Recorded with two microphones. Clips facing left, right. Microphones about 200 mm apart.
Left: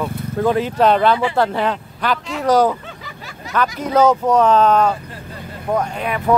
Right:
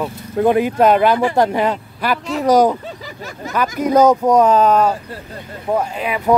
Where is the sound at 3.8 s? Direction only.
10° right (ahead or behind).